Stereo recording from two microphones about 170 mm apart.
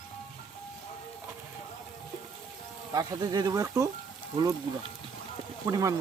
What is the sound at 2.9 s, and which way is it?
Speech, 20° right (ahead or behind).